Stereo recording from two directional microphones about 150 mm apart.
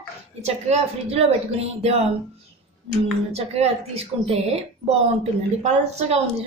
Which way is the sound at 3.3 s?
45° right (ahead or behind).